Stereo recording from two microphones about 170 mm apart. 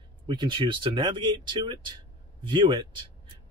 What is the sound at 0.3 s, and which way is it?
Speech, 30° right (ahead or behind).